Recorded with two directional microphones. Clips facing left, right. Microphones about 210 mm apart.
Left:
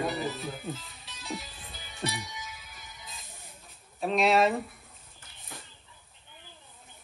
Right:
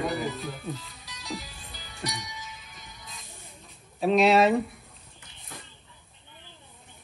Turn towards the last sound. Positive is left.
turn(degrees=0)  # may be behind; listen again after turning